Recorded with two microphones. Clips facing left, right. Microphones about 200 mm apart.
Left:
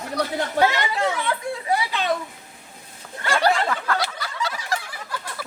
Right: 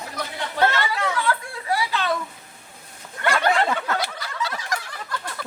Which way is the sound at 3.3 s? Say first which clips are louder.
Left 1 dB; 35° left (ahead or behind).